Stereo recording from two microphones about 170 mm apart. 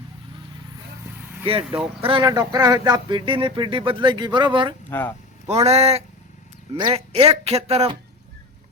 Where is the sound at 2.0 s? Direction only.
30° right (ahead or behind).